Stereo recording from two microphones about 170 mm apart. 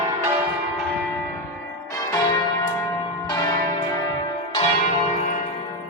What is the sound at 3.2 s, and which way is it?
Church bell, 25° left (ahead or behind).